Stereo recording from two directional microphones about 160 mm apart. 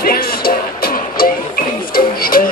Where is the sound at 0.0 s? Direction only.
70° left (ahead or behind).